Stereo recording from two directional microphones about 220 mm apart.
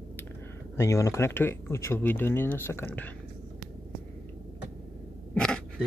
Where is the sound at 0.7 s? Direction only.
15° left (ahead or behind).